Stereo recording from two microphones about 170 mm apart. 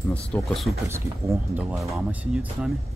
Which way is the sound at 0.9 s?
10° right (ahead or behind).